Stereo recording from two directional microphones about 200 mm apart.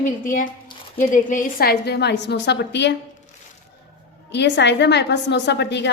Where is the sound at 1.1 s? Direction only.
45° left (ahead or behind).